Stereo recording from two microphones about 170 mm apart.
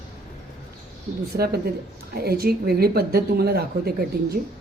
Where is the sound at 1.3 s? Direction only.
65° right (ahead or behind).